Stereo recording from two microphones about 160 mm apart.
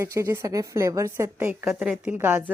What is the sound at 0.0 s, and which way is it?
A woman's voice, 15° right (ahead or behind).